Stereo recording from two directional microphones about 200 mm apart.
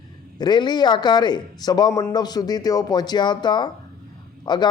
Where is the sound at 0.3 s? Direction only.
20° left (ahead or behind).